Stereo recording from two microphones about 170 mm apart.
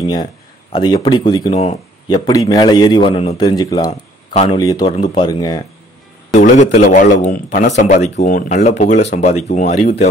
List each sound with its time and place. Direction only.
0.0 s a man's voice: 25° left (ahead or behind)
1.5 s speech: 35° left (ahead or behind)
2.0 s a man's voice: 25° left (ahead or behind)
4.3 s a man's voice: 35° left (ahead or behind)
6.3 s a man's voice: 50° left (ahead or behind)